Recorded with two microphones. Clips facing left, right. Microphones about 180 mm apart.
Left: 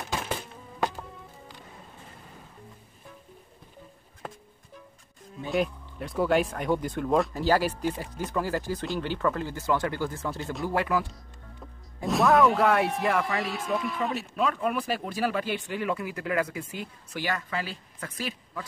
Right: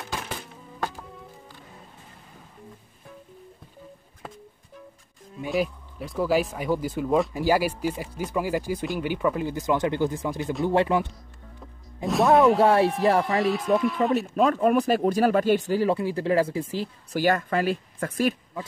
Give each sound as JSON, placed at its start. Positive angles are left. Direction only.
{"t": 5.5, "sound": "speech", "side_deg": 0}
{"t": 10.6, "sound": "speech", "side_deg": -25}
{"t": 12.0, "sound": "music", "side_deg": -20}
{"t": 12.5, "sound": "speech", "side_deg": -30}
{"t": 13.2, "sound": "speech", "side_deg": 0}
{"t": 14.3, "sound": "speech", "side_deg": -45}